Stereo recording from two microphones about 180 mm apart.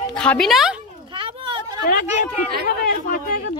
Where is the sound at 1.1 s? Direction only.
30° right (ahead or behind).